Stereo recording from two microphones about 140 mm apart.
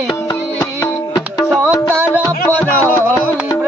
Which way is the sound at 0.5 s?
25° left (ahead or behind).